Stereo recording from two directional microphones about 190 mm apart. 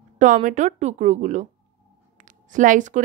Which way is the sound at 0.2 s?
40° right (ahead or behind).